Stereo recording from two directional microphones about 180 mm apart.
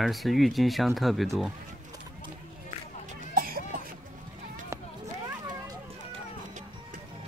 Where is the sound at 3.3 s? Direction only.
50° right (ahead or behind).